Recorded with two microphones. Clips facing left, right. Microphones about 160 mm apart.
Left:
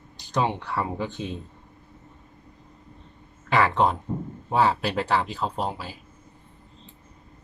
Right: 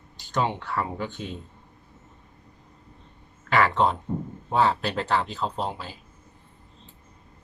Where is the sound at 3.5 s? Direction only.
15° left (ahead or behind).